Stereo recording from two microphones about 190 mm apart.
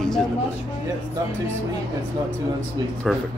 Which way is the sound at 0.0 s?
5° left (ahead or behind).